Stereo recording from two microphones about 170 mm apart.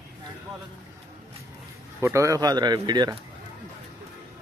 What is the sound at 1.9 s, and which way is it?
Speech, 15° right (ahead or behind).